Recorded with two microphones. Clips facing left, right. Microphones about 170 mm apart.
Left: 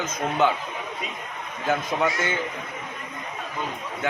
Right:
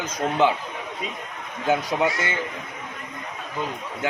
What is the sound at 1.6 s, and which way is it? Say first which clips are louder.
Speech: right 2 dB; 15° right (ahead or behind).